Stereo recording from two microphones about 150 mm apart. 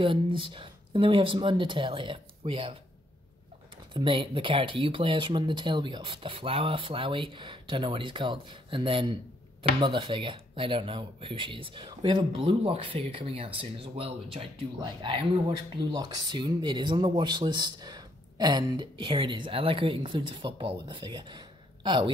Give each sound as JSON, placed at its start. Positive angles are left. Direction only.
{"t": 0.0, "sound": "speech", "side_deg": -35}
{"t": 3.9, "sound": "speech", "side_deg": -35}